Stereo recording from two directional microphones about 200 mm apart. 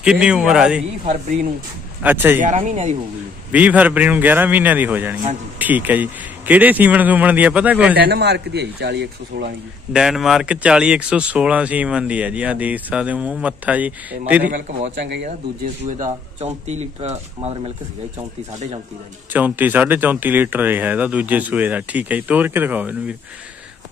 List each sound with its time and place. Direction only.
0.0 s a man's voice: 5° right (ahead or behind)
2.0 s speech: 10° right (ahead or behind)
2.4 s speech: 35° right (ahead or behind)
3.5 s speech: 5° right (ahead or behind)
8.0 s a man's voice: 55° right (ahead or behind)
9.9 s speech: centre (ahead or behind)
15.0 s a man's voice: 60° right (ahead or behind)
15.8 s speech: 35° right (ahead or behind)
19.3 s speech: 10° right (ahead or behind)